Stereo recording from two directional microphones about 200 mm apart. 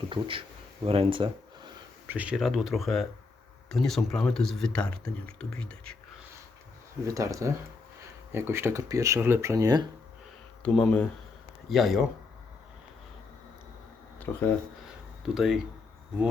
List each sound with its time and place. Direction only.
0.1 s speech: 25° right (ahead or behind)
2.0 s speech: 5° right (ahead or behind)
7.0 s speech: 15° right (ahead or behind)
10.6 s speech: 5° left (ahead or behind)
14.3 s speech: 10° left (ahead or behind)
15.2 s speech: centre (ahead or behind)